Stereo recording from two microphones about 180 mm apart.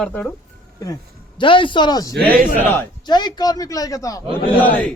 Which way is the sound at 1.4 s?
30° left (ahead or behind).